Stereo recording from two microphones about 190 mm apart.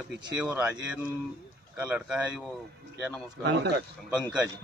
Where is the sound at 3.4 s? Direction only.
65° right (ahead or behind).